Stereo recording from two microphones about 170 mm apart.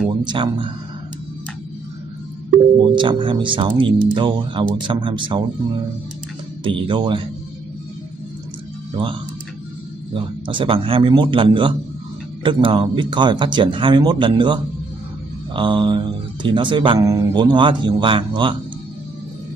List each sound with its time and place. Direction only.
0.2 s speech: 30° right (ahead or behind)
3.0 s speech: 30° right (ahead or behind)
6.6 s speech: 30° right (ahead or behind)
8.9 s speech: 30° right (ahead or behind)